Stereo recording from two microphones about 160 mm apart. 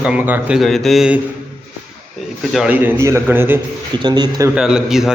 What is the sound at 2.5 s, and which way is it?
A man's voice, 5° right (ahead or behind).